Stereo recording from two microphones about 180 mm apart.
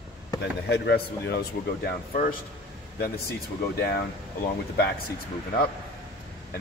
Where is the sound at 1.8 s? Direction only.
55° left (ahead or behind).